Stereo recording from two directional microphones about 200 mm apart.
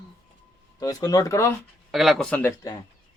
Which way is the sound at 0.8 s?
20° left (ahead or behind).